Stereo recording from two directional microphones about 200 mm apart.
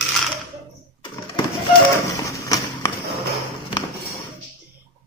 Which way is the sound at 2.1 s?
15° left (ahead or behind).